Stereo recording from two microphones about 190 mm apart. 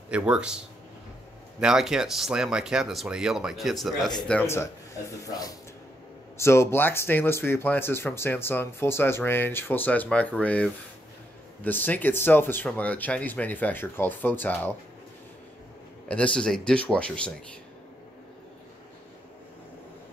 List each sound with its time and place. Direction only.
0.1 s speech: 5° right (ahead or behind)
1.6 s speech: 5° right (ahead or behind)
4.3 s speech: 10° left (ahead or behind)
16.1 s speech: 5° left (ahead or behind)